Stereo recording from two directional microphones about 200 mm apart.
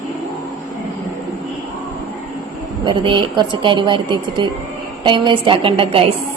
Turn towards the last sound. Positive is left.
turn(degrees=-25)  # may be behind; listen again after turning